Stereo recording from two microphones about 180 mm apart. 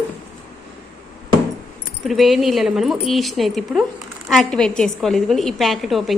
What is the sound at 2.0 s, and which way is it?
A woman's voice, centre (ahead or behind).